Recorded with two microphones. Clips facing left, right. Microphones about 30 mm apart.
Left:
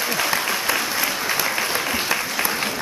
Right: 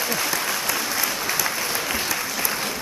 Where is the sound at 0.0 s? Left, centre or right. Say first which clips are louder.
Left 3 dB; centre.